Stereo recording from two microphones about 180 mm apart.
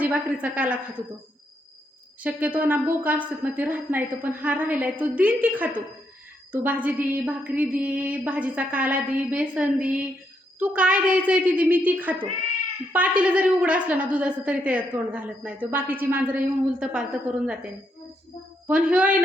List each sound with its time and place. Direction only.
0.0 s a woman's voice: 10° right (ahead or behind)
2.2 s a woman's voice: 10° right (ahead or behind)
18.7 s a woman's voice: 5° right (ahead or behind)